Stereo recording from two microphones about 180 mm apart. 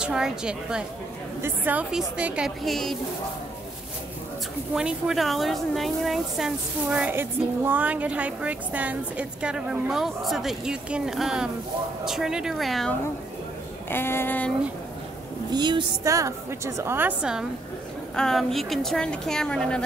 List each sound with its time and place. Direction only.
0.0 s a woman's voice: 5° right (ahead or behind)
4.7 s a woman's voice: 5° right (ahead or behind)
13.8 s a sound: 10° left (ahead or behind)
15.5 s a woman's voice: 25° right (ahead or behind); by 19.8 s 5° left (ahead or behind)